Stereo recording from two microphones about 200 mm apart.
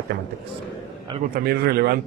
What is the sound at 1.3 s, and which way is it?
Speech, 50° right (ahead or behind).